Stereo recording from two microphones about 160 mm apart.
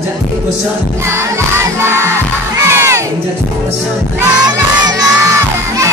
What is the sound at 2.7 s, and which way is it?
Crowd, 15° right (ahead or behind).